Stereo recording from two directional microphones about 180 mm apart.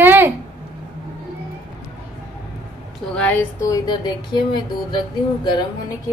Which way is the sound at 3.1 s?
10° left (ahead or behind).